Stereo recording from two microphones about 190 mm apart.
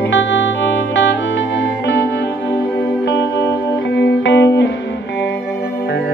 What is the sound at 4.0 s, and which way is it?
Music, 70° left (ahead or behind).